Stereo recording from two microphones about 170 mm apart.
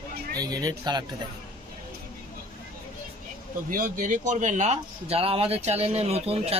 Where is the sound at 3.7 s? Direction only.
50° right (ahead or behind).